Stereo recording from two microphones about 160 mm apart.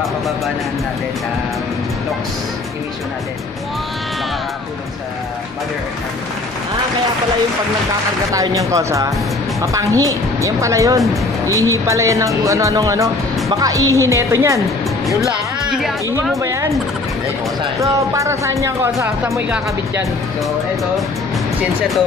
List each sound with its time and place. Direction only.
8.3 s speech: 20° right (ahead or behind)
16.3 s speech: 20° right (ahead or behind)
17.7 s speech: 20° right (ahead or behind)